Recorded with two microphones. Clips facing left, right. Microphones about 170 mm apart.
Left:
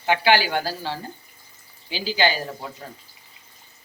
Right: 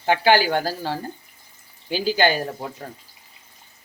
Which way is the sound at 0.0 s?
45° right (ahead or behind).